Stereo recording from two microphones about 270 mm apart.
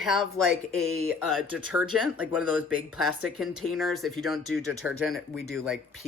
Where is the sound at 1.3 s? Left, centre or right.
Centre.